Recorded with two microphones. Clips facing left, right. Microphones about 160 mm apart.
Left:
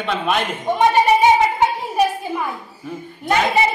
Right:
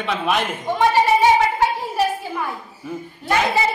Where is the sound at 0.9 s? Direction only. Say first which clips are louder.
Left 1 dB; 15° left (ahead or behind).